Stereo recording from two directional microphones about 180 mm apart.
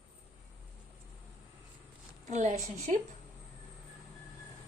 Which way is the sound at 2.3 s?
40° right (ahead or behind).